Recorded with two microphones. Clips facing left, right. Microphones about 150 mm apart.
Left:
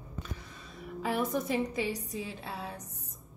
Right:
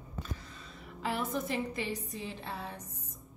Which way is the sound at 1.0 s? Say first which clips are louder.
Left 3 dB; 15° left (ahead or behind).